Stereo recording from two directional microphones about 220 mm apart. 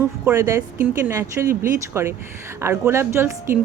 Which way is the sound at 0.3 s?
10° right (ahead or behind).